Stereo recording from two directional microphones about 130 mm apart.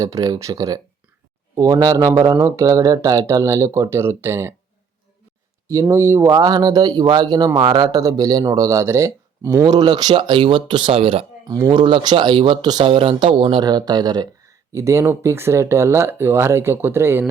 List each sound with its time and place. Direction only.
0.0 s speech: 25° right (ahead or behind)
5.9 s speech: 20° right (ahead or behind)
6.3 s speech: 30° right (ahead or behind); by 11.3 s 45° right (ahead or behind)
11.4 s speech: 30° right (ahead or behind)